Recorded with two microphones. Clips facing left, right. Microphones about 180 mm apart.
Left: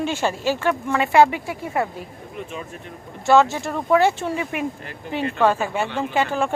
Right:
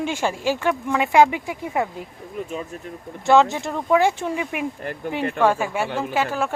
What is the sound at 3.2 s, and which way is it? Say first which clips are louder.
Speech: even; 15° right (ahead or behind).